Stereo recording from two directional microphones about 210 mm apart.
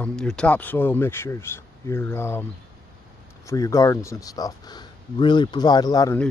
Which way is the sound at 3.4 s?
15° left (ahead or behind).